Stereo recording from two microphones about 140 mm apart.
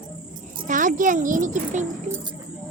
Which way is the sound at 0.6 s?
70° right (ahead or behind).